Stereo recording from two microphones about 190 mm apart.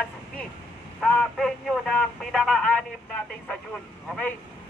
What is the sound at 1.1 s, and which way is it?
Speech, 5° left (ahead or behind).